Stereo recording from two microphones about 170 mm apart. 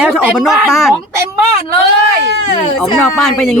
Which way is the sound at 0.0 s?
10° right (ahead or behind).